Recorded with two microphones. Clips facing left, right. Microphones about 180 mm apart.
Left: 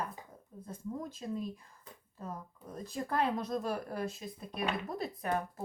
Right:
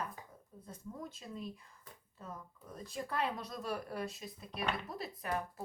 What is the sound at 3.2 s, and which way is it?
A woman's voice, 50° left (ahead or behind).